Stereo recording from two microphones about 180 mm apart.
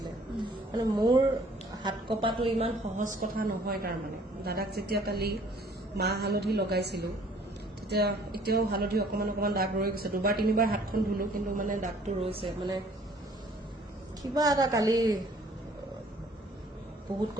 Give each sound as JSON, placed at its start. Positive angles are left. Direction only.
{"t": 0.0, "sound": "a sound", "side_deg": -25}
{"t": 1.8, "sound": "a woman's voice", "side_deg": -25}
{"t": 3.2, "sound": "a man's voice", "side_deg": -55}
{"t": 14.2, "sound": "a woman's voice", "side_deg": -20}